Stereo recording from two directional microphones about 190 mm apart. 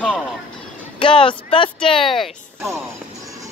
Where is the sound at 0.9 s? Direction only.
25° left (ahead or behind).